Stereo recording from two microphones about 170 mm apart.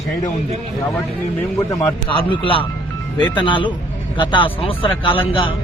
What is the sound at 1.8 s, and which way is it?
Speech, 30° left (ahead or behind).